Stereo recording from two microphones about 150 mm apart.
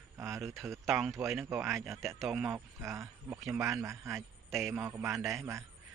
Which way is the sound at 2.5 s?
20° right (ahead or behind).